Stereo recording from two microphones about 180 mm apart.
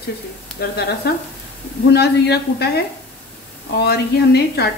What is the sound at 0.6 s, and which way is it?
A woman's voice, 60° left (ahead or behind).